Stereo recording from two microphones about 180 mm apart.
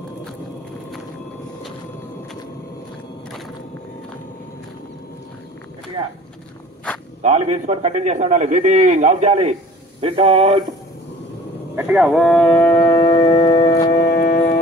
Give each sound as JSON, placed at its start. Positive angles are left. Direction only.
{"t": 7.2, "sound": "a man's voice", "side_deg": -40}
{"t": 11.7, "sound": "speech", "side_deg": -5}
{"t": 13.0, "sound": "music", "side_deg": 20}
{"t": 14.0, "sound": "music", "side_deg": 55}